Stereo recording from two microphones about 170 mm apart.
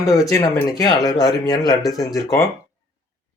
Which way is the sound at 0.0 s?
20° left (ahead or behind).